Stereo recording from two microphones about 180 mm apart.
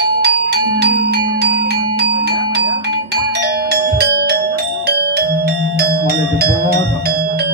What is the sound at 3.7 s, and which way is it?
Music, 65° right (ahead or behind).